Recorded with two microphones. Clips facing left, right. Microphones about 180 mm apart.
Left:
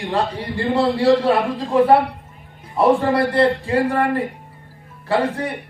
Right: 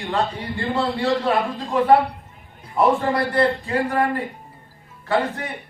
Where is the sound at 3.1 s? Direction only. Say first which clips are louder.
Left 3 dB; 30° left (ahead or behind).